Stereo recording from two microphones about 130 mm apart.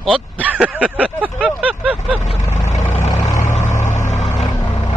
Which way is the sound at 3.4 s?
70° left (ahead or behind).